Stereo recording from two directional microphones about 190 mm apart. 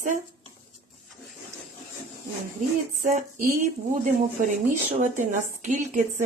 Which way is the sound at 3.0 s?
40° right (ahead or behind).